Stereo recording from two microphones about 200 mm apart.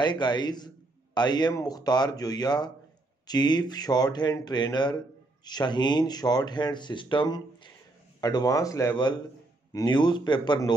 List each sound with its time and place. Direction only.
0.0 s speech: 20° left (ahead or behind)